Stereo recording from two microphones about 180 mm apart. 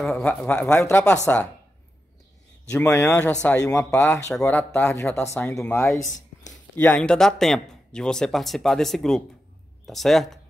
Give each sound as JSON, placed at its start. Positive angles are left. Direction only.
{"t": 0.0, "sound": "speech", "side_deg": 5}
{"t": 2.7, "sound": "speech", "side_deg": 15}
{"t": 6.0, "sound": "a sound", "side_deg": 45}
{"t": 6.8, "sound": "speech", "side_deg": 5}